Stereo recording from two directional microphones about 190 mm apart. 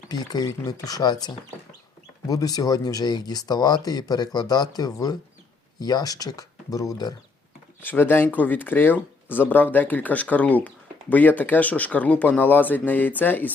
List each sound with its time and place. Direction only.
0.1 s speech: 20° left (ahead or behind)